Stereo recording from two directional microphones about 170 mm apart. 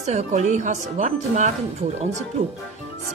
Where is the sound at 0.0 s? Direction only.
45° right (ahead or behind).